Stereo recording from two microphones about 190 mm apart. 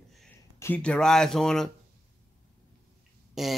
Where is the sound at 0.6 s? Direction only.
10° left (ahead or behind).